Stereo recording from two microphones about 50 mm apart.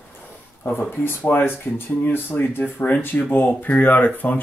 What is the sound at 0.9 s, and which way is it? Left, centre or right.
Speech, left.